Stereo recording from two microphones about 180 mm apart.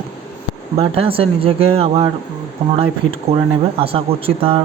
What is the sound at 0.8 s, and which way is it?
Speech, 30° right (ahead or behind).